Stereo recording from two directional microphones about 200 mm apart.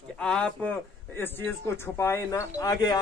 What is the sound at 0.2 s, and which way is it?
A man's voice, 5° left (ahead or behind).